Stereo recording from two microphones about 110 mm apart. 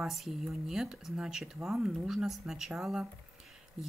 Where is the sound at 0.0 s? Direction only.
Centre (ahead or behind).